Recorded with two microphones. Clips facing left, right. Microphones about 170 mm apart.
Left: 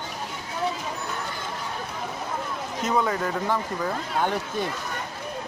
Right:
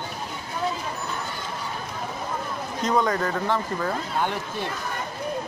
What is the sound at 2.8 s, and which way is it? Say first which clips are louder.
Speech: right 2 dB; 10° left (ahead or behind).